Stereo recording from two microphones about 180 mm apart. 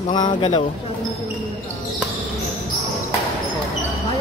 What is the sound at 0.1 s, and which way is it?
Speech, 25° left (ahead or behind).